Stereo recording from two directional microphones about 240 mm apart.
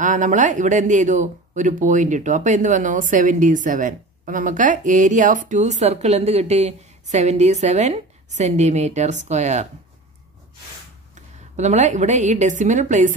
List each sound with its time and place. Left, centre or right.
0.0 s speech: right
11.5 s a woman's voice: right